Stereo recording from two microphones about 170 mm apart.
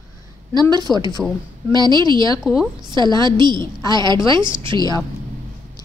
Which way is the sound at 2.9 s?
25° right (ahead or behind).